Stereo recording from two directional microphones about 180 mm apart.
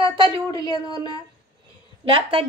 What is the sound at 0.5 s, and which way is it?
Speech, 20° left (ahead or behind).